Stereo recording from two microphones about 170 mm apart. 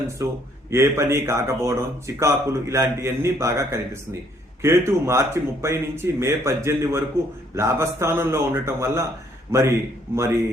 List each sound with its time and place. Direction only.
0.2 s speech: 15° right (ahead or behind)